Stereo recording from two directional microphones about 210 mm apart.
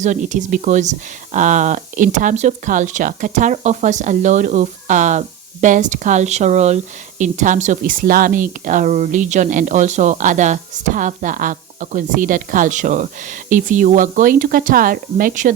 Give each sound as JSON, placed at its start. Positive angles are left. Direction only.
{"t": 0.0, "sound": "speech", "side_deg": -35}